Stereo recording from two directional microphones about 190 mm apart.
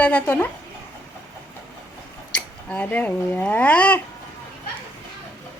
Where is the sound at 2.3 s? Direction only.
5° left (ahead or behind).